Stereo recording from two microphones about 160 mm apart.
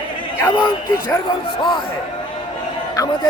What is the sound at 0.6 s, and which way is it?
Speech, 15° left (ahead or behind).